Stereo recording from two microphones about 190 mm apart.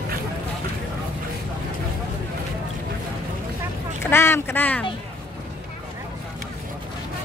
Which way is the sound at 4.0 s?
10° left (ahead or behind).